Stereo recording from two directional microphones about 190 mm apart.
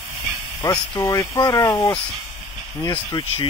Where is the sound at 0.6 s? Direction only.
20° left (ahead or behind).